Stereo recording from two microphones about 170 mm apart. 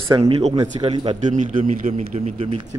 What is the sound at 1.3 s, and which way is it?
A man's voice, 45° right (ahead or behind).